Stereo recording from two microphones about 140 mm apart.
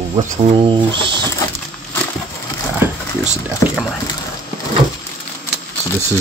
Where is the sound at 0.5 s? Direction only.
35° right (ahead or behind).